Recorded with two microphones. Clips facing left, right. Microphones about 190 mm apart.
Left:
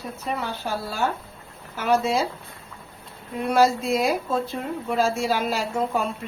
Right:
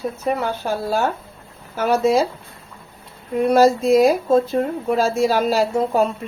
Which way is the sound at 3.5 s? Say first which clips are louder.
Right 6 dB; 40° right (ahead or behind).